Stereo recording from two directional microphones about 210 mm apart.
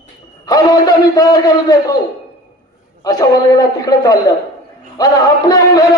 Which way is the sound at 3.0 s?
15° left (ahead or behind).